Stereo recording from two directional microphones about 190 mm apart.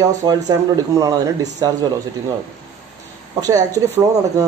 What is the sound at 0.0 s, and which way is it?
A man's voice, 20° right (ahead or behind).